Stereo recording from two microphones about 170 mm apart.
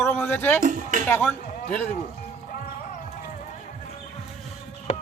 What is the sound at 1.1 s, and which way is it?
Speech, 10° left (ahead or behind).